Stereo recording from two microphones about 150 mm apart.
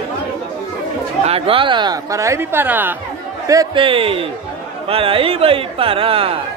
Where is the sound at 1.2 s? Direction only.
40° right (ahead or behind); by 3.0 s 15° right (ahead or behind).